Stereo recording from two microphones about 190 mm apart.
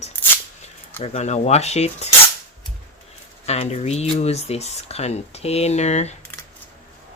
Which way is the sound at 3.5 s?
35° left (ahead or behind).